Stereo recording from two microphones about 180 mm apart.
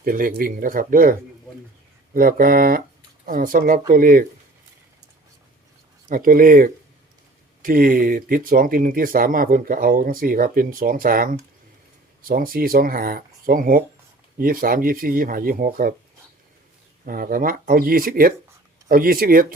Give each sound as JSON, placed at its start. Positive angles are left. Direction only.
{"t": 0.0, "sound": "speech", "side_deg": -50}
{"t": 2.1, "sound": "speech", "side_deg": -55}
{"t": 6.1, "sound": "speech", "side_deg": -50}
{"t": 17.1, "sound": "speech", "side_deg": -50}